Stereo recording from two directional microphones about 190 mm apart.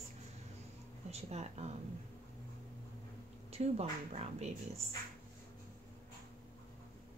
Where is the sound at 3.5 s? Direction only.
35° right (ahead or behind).